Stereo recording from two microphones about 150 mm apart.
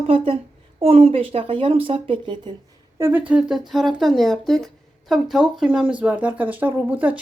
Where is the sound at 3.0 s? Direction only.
10° right (ahead or behind).